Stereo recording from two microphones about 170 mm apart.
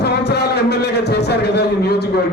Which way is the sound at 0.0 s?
75° left (ahead or behind).